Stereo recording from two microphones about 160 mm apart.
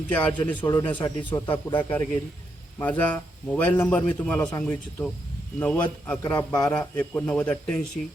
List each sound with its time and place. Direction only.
0.1 s a man's voice: 10° left (ahead or behind)
0.6 s a man's voice: 25° left (ahead or behind)
1.7 s a man's voice: 10° left (ahead or behind)